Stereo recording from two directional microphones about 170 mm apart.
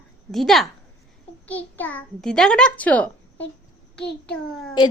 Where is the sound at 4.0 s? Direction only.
75° left (ahead or behind).